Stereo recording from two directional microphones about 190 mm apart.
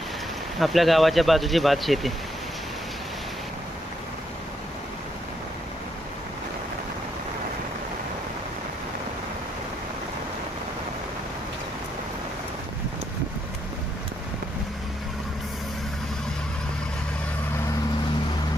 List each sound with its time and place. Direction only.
0.6 s speech: centre (ahead or behind)